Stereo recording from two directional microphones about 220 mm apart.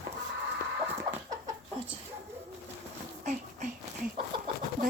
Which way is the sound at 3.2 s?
35° right (ahead or behind).